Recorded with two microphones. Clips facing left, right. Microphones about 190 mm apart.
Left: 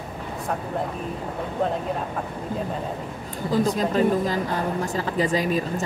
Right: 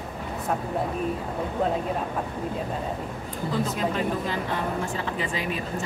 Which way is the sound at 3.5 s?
40° left (ahead or behind).